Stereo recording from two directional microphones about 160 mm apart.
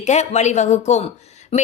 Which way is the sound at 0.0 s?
45° left (ahead or behind).